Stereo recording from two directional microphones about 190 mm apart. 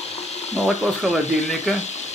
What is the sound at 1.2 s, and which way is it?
Speech, 35° left (ahead or behind).